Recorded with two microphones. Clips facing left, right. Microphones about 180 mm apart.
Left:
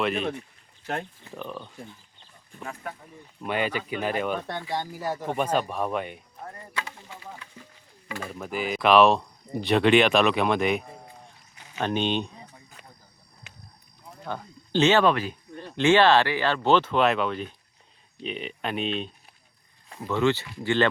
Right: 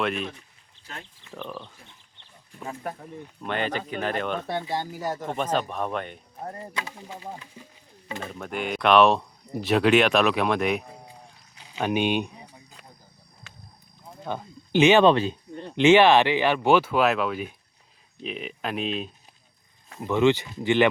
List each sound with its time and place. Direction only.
1.3 s speech: centre (ahead or behind)
3.4 s speech: 10° left (ahead or behind)
4.5 s speech: 20° right (ahead or behind)
4.8 s speech: centre (ahead or behind)
6.4 s music: 30° right (ahead or behind)
6.7 s speech: 20° right (ahead or behind)
8.3 s speech: 5° left (ahead or behind)
10.9 s a sound: 10° right (ahead or behind)
14.3 s speech: 15° right (ahead or behind)
15.0 s speech: 25° right (ahead or behind); by 19.1 s 5° right (ahead or behind)
20.0 s speech: 20° right (ahead or behind)